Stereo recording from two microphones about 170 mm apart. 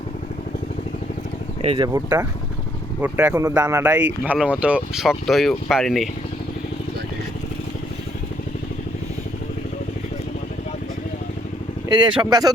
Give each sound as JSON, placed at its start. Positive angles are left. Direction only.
{"t": 1.6, "sound": "speech", "side_deg": -30}
{"t": 1.9, "sound": "speech", "side_deg": -15}
{"t": 11.9, "sound": "speech", "side_deg": -25}